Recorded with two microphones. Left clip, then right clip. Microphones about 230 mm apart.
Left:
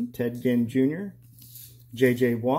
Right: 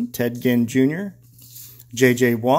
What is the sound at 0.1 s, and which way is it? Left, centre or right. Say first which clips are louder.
Speech: right 5 dB; centre.